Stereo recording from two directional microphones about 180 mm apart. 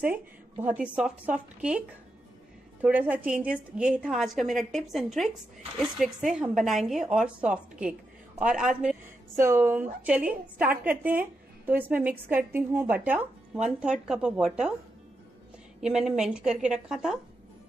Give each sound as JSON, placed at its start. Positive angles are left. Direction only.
{"t": 0.0, "sound": "a woman's voice", "side_deg": -10}
{"t": 2.8, "sound": "a woman's voice", "side_deg": -10}
{"t": 9.4, "sound": "a woman's voice", "side_deg": -15}
{"t": 15.8, "sound": "a woman's voice", "side_deg": -5}